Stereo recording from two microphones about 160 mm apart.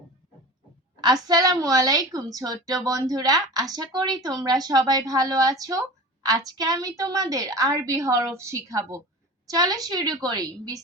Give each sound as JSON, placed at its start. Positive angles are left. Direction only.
{"t": 1.0, "sound": "a woman's voice", "side_deg": -25}